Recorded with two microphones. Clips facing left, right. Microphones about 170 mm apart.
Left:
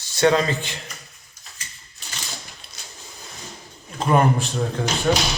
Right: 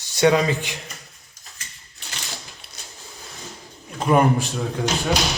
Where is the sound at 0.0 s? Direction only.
15° right (ahead or behind).